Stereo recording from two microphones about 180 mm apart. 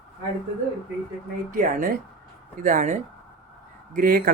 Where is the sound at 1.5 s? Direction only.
50° right (ahead or behind).